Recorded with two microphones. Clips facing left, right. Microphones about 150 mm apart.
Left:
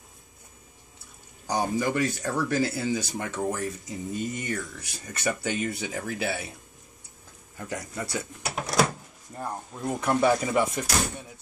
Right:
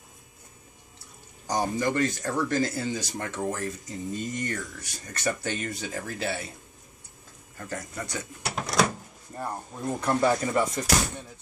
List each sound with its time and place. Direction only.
1.5 s speech: 10° left (ahead or behind)
7.5 s speech: 10° left (ahead or behind)